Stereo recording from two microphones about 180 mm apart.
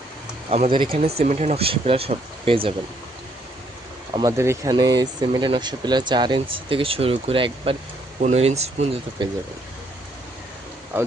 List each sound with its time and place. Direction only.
0.5 s speech: 30° right (ahead or behind)
4.1 s speech: 20° right (ahead or behind); by 9.2 s 35° right (ahead or behind)